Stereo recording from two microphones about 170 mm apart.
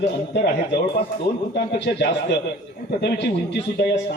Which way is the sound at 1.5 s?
90° left.